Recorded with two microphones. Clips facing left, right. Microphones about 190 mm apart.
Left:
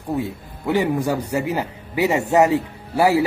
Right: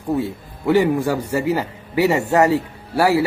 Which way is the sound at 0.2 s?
15° left (ahead or behind).